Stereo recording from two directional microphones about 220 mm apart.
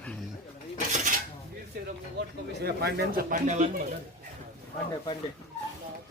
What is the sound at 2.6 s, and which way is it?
Speech, 45° right (ahead or behind).